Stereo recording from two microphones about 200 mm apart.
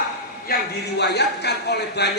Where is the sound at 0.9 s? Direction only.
55° left (ahead or behind).